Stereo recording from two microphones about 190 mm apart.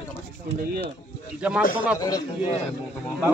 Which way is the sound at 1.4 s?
5° right (ahead or behind).